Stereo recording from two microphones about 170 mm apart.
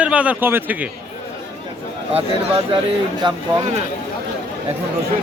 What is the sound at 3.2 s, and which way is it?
Speech, 25° right (ahead or behind).